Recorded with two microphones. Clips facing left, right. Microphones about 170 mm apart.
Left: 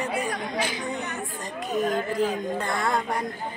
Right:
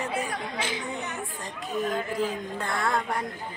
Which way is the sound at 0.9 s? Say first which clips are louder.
Left 2 dB; centre (ahead or behind).